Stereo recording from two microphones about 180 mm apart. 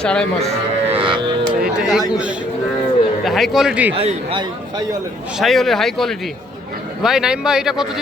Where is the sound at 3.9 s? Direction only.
30° right (ahead or behind).